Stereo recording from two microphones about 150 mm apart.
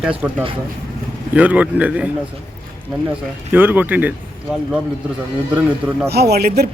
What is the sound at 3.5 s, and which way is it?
Speech, 10° right (ahead or behind).